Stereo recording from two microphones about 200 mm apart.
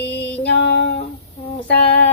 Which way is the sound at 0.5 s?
60° left (ahead or behind).